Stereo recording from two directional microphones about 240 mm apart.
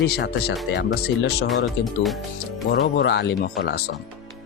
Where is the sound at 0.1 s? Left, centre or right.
Left.